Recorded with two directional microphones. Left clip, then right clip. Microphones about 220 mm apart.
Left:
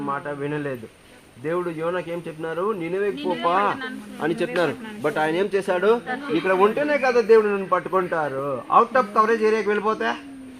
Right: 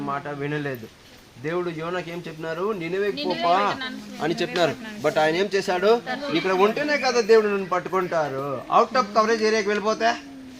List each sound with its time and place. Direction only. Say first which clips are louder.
0.0 s speech: left 1 dB; 55° right (ahead or behind)